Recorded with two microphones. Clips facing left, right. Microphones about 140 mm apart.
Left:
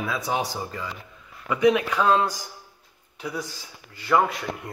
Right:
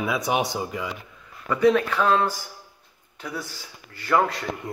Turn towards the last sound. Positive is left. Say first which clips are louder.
# even
turn(degrees=5)  # may be behind; listen again after turning